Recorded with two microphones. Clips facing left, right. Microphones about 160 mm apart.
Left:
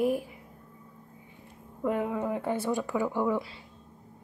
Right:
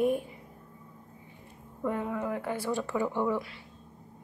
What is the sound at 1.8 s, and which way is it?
Speech, 15° left (ahead or behind).